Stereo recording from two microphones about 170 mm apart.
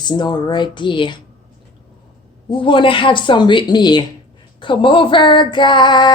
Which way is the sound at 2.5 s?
30° left (ahead or behind).